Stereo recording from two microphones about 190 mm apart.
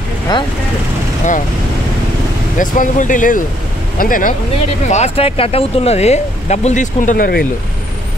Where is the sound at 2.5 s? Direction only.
45° left (ahead or behind).